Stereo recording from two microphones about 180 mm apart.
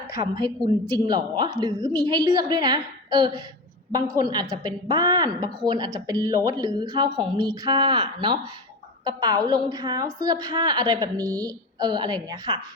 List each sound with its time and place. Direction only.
0.3 s a woman's voice: 25° right (ahead or behind)